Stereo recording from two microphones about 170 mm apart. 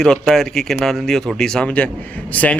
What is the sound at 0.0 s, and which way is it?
Speech, 5° left (ahead or behind).